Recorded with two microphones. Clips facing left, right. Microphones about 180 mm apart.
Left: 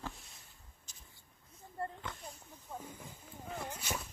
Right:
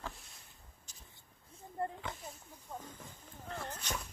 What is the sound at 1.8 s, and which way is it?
Snake, 20° right (ahead or behind).